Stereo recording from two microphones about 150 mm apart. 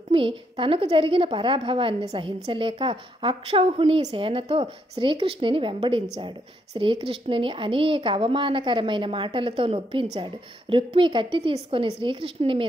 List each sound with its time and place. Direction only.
0.1 s a woman's voice: 35° right (ahead or behind)